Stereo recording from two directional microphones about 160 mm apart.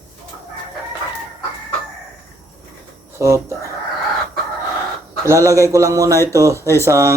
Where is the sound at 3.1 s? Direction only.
20° right (ahead or behind).